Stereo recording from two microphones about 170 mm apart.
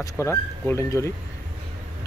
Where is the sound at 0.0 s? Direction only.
15° left (ahead or behind).